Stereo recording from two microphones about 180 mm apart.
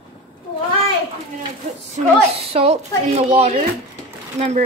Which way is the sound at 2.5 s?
35° right (ahead or behind).